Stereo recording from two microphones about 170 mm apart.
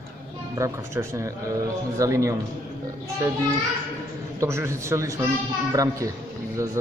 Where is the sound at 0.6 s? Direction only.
15° right (ahead or behind).